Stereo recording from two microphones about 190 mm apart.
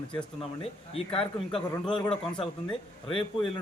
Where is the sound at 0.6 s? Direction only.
30° left (ahead or behind).